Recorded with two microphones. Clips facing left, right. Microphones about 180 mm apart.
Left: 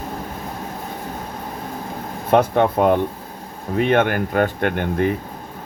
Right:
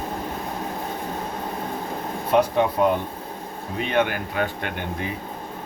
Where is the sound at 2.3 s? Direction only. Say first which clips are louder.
Left 4 dB; 55° left (ahead or behind).